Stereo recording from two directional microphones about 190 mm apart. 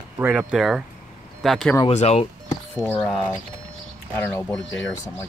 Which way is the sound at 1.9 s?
35° left (ahead or behind).